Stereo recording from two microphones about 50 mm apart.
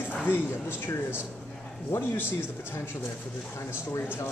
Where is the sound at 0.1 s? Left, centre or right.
Left.